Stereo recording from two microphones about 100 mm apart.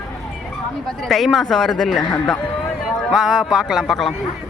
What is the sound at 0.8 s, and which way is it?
Speech, centre (ahead or behind).